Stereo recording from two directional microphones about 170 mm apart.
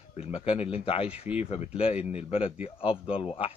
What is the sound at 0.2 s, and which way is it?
A man's voice, 35° left (ahead or behind).